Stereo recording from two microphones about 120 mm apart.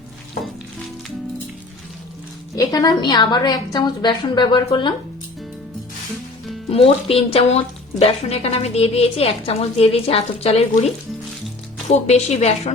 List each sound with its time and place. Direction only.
2.6 s a woman's voice: 30° left (ahead or behind)
6.7 s speech: 55° left (ahead or behind)
11.9 s a woman's voice: 70° left (ahead or behind)